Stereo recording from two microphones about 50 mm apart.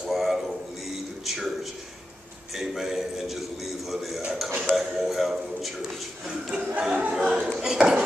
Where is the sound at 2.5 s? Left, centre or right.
Centre.